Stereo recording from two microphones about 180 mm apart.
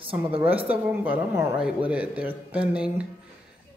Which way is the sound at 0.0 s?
30° right (ahead or behind).